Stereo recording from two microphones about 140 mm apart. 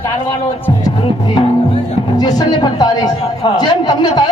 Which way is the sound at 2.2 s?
30° left (ahead or behind).